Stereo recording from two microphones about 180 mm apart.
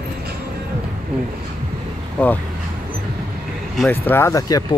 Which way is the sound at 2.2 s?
10° left (ahead or behind).